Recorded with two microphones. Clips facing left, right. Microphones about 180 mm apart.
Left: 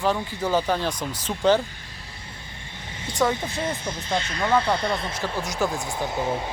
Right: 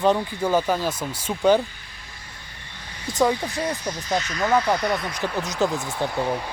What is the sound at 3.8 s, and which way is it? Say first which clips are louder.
Speech: right 2 dB; 25° left (ahead or behind).